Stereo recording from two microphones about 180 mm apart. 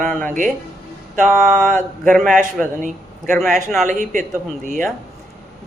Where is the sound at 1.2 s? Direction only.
Centre (ahead or behind).